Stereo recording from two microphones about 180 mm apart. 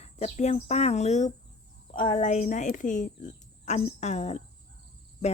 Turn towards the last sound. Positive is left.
turn(degrees=40)  # may be behind; listen again after turning